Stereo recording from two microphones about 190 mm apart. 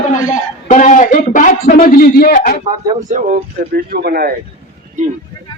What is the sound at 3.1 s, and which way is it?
Speech, 40° right (ahead or behind).